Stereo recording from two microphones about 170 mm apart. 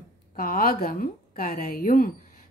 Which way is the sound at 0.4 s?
60° left (ahead or behind).